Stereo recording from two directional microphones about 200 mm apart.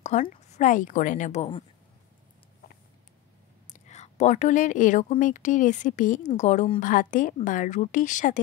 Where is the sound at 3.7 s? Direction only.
35° left (ahead or behind).